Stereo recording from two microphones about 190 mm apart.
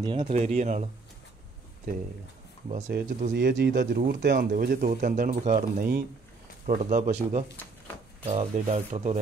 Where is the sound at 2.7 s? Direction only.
40° right (ahead or behind).